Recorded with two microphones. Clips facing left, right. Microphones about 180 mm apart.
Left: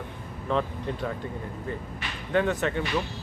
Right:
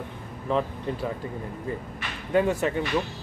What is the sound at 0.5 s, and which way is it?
Speech, 5° right (ahead or behind).